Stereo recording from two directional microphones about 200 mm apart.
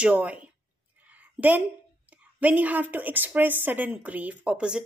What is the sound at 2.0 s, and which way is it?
A woman's voice, 10° right (ahead or behind).